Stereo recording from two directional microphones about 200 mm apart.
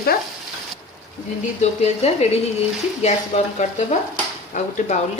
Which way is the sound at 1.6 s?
30° left (ahead or behind).